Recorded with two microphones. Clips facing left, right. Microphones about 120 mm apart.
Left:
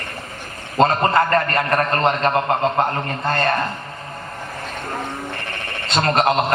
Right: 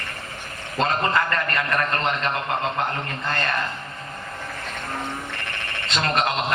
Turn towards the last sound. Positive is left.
turn(degrees=40)  # may be behind; listen again after turning